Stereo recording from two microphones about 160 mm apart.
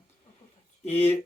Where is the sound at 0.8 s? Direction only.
40° left (ahead or behind).